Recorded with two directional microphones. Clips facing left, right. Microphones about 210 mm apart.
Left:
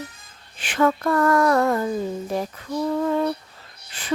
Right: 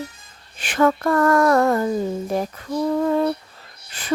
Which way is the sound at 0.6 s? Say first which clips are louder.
Right 2 dB; 45° right (ahead or behind).